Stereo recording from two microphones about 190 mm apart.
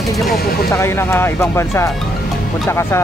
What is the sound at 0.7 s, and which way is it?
Speech, 15° left (ahead or behind).